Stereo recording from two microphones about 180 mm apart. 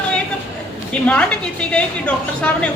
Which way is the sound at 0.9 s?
5° left (ahead or behind).